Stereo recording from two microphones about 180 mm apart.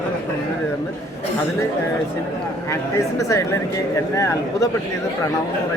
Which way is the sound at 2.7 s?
15° left (ahead or behind).